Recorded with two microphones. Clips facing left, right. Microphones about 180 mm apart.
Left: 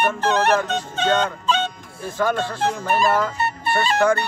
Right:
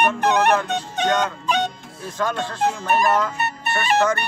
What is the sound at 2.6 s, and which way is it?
Speech, 15° right (ahead or behind).